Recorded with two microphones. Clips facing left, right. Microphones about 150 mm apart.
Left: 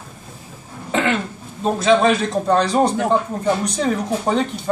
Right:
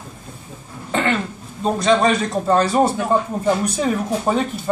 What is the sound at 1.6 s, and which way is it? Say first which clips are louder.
Speech: left 1 dB; centre (ahead or behind).